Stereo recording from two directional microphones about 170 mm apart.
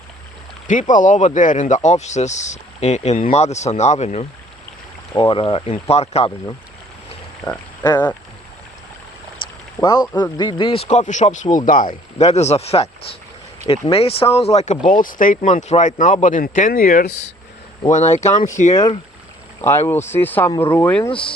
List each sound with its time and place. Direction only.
0.7 s speech: 50° left (ahead or behind)
7.4 s frog: 10° left (ahead or behind)
9.8 s speech: 25° left (ahead or behind)
10.8 s speech: 45° left (ahead or behind)
12.2 s speech: 40° left (ahead or behind)
14.8 s speech: 50° left (ahead or behind)
19.9 s speech: 15° left (ahead or behind)
21.1 s speech: 30° left (ahead or behind)